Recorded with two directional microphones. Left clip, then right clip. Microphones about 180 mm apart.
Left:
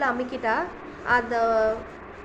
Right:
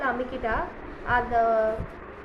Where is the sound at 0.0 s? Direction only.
45° left (ahead or behind).